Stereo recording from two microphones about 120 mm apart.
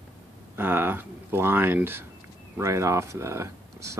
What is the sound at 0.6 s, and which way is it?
Speech, 15° right (ahead or behind).